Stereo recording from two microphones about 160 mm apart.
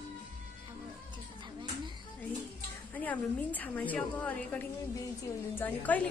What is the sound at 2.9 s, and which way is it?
A woman's voice, 10° left (ahead or behind).